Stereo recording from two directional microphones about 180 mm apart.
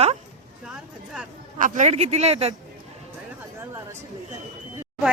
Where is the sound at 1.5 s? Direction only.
45° right (ahead or behind).